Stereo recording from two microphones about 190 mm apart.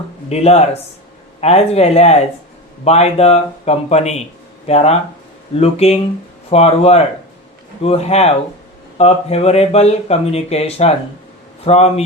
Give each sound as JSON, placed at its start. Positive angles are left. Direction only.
{"t": 0.3, "sound": "speech", "side_deg": 35}